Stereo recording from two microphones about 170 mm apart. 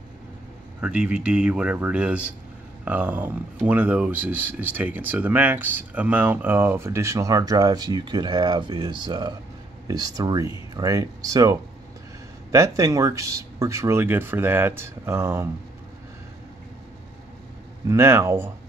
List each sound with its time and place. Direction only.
0.7 s speech: 5° right (ahead or behind)
17.8 s speech: 15° right (ahead or behind)